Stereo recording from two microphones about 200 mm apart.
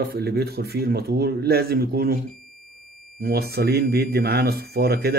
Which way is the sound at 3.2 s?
50° right (ahead or behind).